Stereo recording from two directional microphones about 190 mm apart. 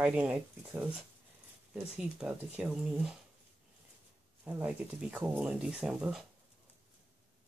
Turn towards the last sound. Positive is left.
turn(degrees=-5)  # may be behind; listen again after turning